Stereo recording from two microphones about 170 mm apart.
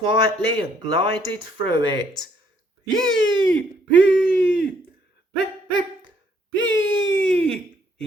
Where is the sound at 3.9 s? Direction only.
90° left.